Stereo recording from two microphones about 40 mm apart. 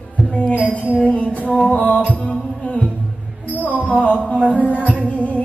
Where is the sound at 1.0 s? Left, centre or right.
Left.